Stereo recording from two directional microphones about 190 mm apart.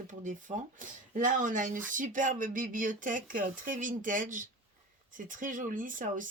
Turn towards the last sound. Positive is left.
turn(degrees=-45)  # may be behind; listen again after turning